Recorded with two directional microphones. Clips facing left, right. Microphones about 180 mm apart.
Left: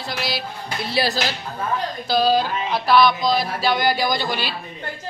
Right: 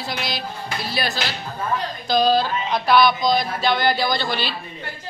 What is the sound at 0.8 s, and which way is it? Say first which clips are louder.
Speech: left 5 dB; 25° left (ahead or behind).